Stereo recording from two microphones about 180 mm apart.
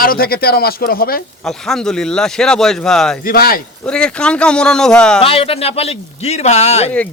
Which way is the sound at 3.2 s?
55° left (ahead or behind).